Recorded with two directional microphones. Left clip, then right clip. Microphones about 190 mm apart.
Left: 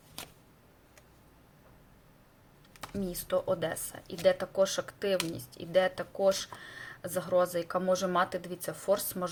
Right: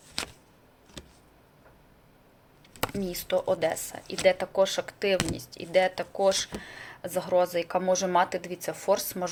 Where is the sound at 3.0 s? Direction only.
15° left (ahead or behind).